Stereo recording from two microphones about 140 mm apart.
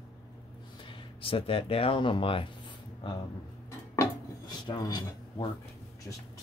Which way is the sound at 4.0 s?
30° left (ahead or behind).